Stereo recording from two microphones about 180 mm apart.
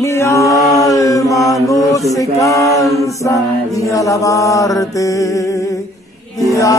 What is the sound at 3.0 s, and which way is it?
Mantra, 15° left (ahead or behind).